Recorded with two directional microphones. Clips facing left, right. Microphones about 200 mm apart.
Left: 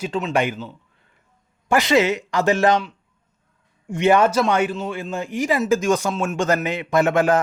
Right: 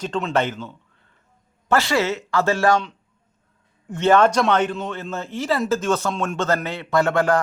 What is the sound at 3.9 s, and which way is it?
A man's voice, 15° left (ahead or behind).